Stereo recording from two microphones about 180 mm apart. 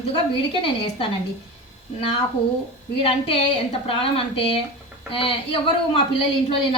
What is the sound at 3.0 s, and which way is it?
A woman's voice, 30° left (ahead or behind).